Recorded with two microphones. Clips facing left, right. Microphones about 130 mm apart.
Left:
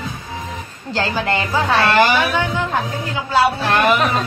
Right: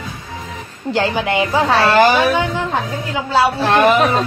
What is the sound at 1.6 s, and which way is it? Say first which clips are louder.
Speech: right 2 dB; 30° right (ahead or behind).